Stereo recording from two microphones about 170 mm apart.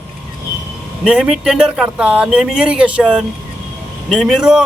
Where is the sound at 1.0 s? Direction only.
Centre (ahead or behind).